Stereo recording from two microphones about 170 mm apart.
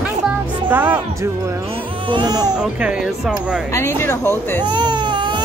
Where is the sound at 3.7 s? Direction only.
15° left (ahead or behind).